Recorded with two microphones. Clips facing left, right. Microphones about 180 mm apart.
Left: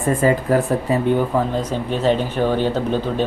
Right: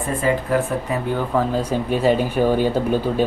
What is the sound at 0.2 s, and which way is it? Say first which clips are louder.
Speech: left 1 dB; 40° left (ahead or behind).